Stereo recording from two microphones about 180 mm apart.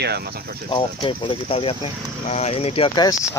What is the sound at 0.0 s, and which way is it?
Speech, 65° right (ahead or behind).